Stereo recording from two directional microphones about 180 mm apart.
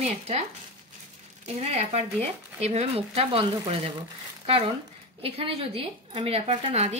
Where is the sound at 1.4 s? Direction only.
40° right (ahead or behind).